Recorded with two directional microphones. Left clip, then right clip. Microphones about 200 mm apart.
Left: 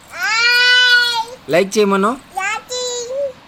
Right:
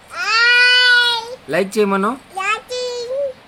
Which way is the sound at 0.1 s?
15° right (ahead or behind).